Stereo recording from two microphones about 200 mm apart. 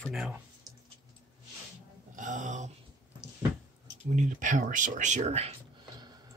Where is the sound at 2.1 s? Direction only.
40° right (ahead or behind).